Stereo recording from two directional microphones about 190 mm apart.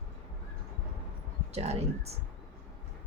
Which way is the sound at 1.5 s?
35° right (ahead or behind).